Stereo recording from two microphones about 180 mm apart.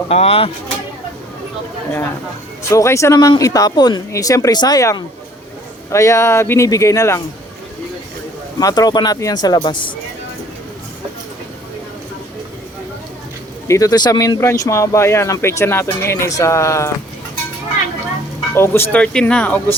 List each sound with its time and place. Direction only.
0.1 s speech: 35° left (ahead or behind)
2.6 s speech: 15° left (ahead or behind)
8.5 s speech: 20° left (ahead or behind)
13.7 s speech: 20° left (ahead or behind)
18.5 s speech: 15° left (ahead or behind)